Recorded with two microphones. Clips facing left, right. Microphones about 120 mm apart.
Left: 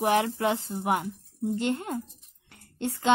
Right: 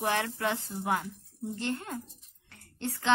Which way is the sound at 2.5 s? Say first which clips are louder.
Left 4 dB; 20° left (ahead or behind).